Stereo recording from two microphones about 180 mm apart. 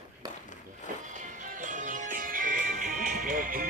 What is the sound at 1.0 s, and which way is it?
Music, 45° right (ahead or behind).